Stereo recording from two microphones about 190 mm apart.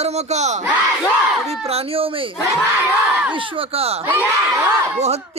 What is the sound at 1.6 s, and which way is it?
Speech, 30° right (ahead or behind).